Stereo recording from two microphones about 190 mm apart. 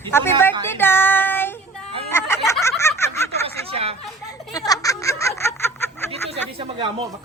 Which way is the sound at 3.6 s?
30° right (ahead or behind).